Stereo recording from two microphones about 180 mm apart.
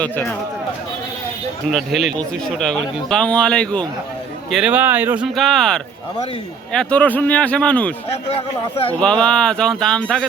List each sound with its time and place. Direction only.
0.0 s speech: 10° left (ahead or behind)
1.7 s a man's voice: centre (ahead or behind)
4.5 s a man's voice: 5° right (ahead or behind)
8.3 s speech: 35° left (ahead or behind)
8.9 s a man's voice: 5° left (ahead or behind)